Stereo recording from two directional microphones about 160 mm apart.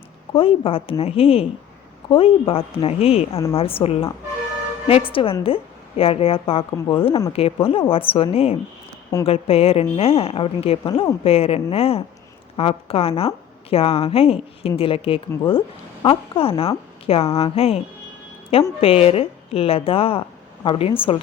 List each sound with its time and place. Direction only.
0.3 s a woman's voice: 35° left (ahead or behind)